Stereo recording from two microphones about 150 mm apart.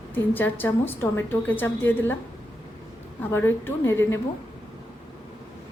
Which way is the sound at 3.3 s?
15° left (ahead or behind).